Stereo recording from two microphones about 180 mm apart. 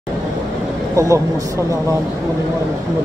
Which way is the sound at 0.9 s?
15° right (ahead or behind).